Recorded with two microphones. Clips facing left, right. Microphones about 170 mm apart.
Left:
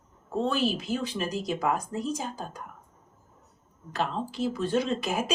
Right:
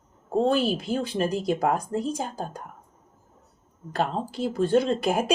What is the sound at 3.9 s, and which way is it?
Speech, 50° right (ahead or behind).